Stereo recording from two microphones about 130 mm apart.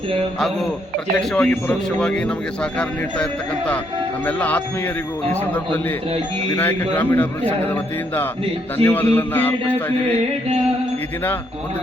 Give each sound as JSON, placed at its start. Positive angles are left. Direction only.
{"t": 0.3, "sound": "a man's voice", "side_deg": 0}
{"t": 4.3, "sound": "a man's voice", "side_deg": 15}
{"t": 6.9, "sound": "a man's voice", "side_deg": 15}